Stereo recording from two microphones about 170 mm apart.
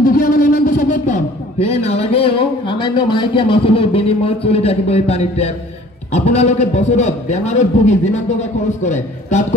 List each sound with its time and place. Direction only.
0.0 s a man's voice: 55° left (ahead or behind)